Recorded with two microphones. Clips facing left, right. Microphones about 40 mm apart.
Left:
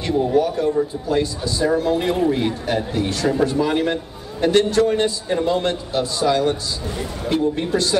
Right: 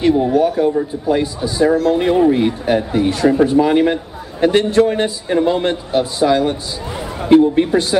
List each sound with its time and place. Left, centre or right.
0.0 s speech: centre